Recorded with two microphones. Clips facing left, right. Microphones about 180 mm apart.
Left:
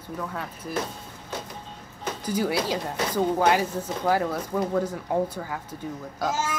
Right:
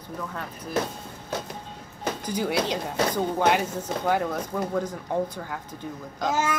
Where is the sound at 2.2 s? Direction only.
5° left (ahead or behind).